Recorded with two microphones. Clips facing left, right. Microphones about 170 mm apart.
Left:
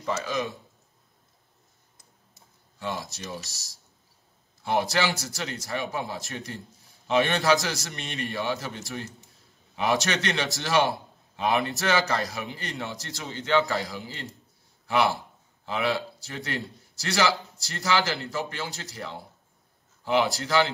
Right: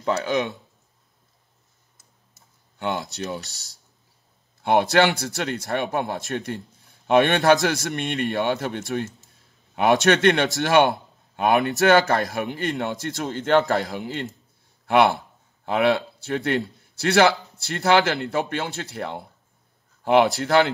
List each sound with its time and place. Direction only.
0.0 s speech: 65° right (ahead or behind)
2.8 s speech: 65° right (ahead or behind)
4.6 s speech: 65° right (ahead or behind)
15.6 s speech: 60° right (ahead or behind)